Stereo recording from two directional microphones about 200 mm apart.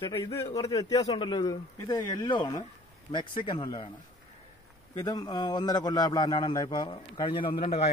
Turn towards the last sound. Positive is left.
turn(degrees=30)  # may be behind; listen again after turning